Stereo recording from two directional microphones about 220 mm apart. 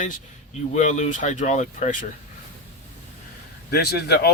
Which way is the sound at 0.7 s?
35° left (ahead or behind).